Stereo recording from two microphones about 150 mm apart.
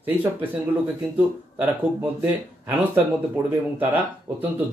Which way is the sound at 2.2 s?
15° right (ahead or behind).